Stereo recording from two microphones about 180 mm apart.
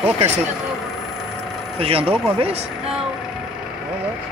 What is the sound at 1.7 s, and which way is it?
Speech, 30° right (ahead or behind).